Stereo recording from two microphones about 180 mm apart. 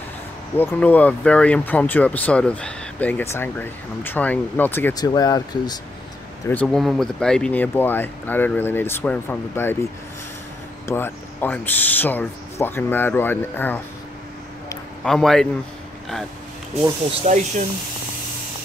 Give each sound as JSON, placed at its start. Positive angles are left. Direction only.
{"t": 0.6, "sound": "speech", "side_deg": 10}
{"t": 6.4, "sound": "speech", "side_deg": 10}
{"t": 10.9, "sound": "speech", "side_deg": 15}
{"t": 15.0, "sound": "a man's voice", "side_deg": 5}
{"t": 17.2, "sound": "speech", "side_deg": -40}